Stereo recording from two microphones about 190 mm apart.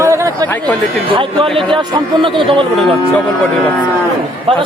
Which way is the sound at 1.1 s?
25° right (ahead or behind).